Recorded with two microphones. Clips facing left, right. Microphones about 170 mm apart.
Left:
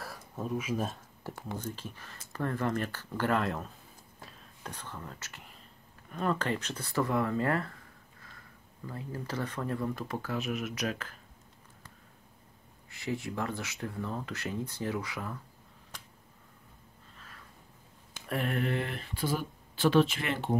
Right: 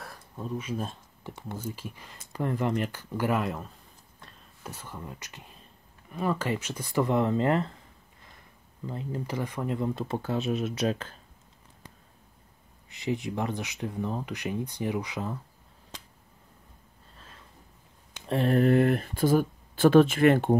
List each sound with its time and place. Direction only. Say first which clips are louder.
0.0 s a sound: left 1 dB; 5° left (ahead or behind)
1.5 s speech: right 3 dB; 10° right (ahead or behind); by 11.1 s 30° right (ahead or behind)
12.9 s speech: right 4 dB; 20° right (ahead or behind)
18.2 s speech: right 8 dB; 30° right (ahead or behind); by 20.5 s 50° right (ahead or behind)